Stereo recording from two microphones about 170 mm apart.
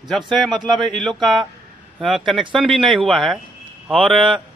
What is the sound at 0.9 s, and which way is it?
A man's voice, centre (ahead or behind).